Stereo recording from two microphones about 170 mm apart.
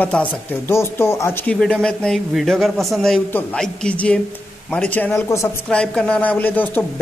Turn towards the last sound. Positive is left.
turn(degrees=10)  # may be behind; listen again after turning